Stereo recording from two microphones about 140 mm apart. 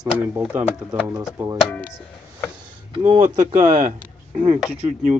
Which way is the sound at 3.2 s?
70° right (ahead or behind).